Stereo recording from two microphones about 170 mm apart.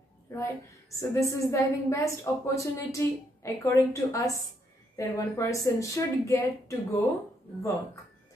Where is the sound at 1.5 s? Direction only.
15° left (ahead or behind).